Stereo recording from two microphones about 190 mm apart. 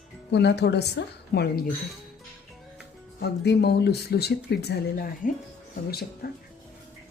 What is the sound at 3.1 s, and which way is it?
Speech, 60° left (ahead or behind).